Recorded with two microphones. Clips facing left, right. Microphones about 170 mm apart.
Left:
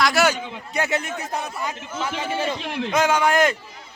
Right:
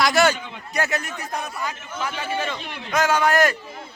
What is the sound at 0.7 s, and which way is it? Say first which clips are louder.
A man's voice: left 1 dB; 25° left (ahead or behind).